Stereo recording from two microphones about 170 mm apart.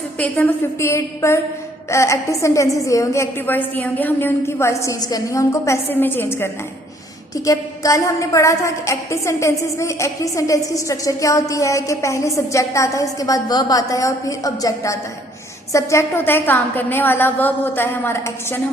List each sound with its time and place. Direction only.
0.2 s a woman's voice: 10° left (ahead or behind)